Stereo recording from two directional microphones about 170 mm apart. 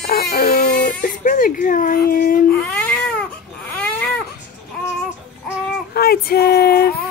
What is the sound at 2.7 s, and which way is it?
Baby cry, 5° left (ahead or behind).